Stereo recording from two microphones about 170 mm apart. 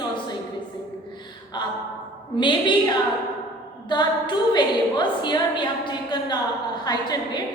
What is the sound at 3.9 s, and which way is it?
A woman's voice, 25° left (ahead or behind).